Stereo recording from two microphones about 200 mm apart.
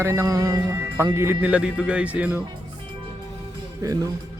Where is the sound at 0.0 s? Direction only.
15° right (ahead or behind).